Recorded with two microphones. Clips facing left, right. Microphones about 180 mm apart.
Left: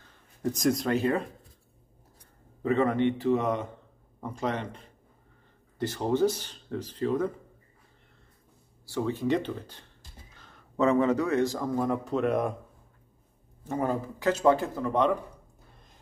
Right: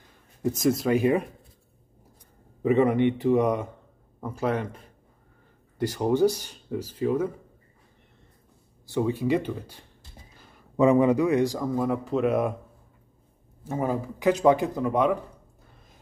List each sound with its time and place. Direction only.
0.4 s speech: 5° right (ahead or behind)
2.6 s speech: 15° right (ahead or behind)
8.8 s speech: 15° right (ahead or behind)
13.7 s speech: 5° right (ahead or behind)